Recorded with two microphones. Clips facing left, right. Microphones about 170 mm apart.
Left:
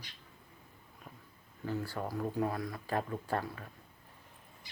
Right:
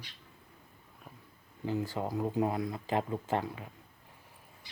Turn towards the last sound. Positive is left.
turn(degrees=-20)  # may be behind; listen again after turning